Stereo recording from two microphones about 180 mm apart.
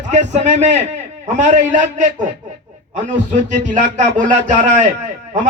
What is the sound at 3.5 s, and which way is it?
Speech, 40° right (ahead or behind).